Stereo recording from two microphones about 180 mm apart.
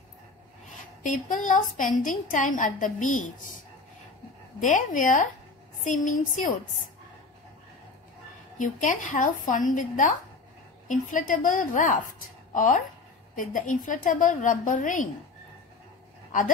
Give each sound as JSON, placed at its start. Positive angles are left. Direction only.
{"t": 1.0, "sound": "a woman's voice", "side_deg": 45}
{"t": 4.6, "sound": "a woman's voice", "side_deg": 45}
{"t": 8.5, "sound": "a woman's voice", "side_deg": 45}
{"t": 16.3, "sound": "a sound", "side_deg": 45}